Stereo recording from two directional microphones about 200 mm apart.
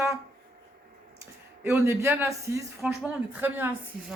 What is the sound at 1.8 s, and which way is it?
A woman's voice, 15° right (ahead or behind).